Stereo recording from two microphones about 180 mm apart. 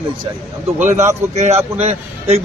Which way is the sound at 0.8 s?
40° right (ahead or behind).